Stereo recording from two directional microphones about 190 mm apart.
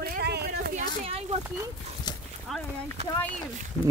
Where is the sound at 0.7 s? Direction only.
30° right (ahead or behind).